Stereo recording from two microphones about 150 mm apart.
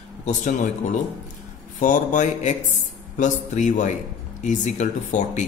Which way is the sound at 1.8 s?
55° left (ahead or behind).